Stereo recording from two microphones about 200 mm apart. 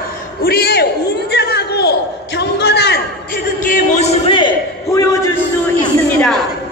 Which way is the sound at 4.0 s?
25° left (ahead or behind).